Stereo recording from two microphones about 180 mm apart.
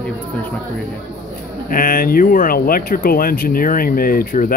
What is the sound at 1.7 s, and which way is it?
Speech, 50° left (ahead or behind).